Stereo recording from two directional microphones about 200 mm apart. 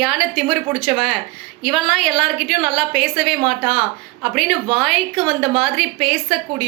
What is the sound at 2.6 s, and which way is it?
Speech, 25° right (ahead or behind).